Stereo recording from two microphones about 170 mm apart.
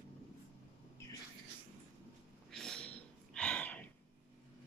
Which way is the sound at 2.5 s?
5° left (ahead or behind).